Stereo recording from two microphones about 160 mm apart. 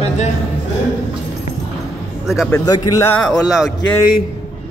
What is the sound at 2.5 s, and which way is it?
Speech, 25° left (ahead or behind).